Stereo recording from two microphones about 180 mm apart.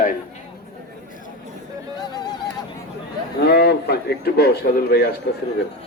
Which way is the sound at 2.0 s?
20° left (ahead or behind).